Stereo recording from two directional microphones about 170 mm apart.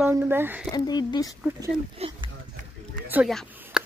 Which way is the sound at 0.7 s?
25° left (ahead or behind).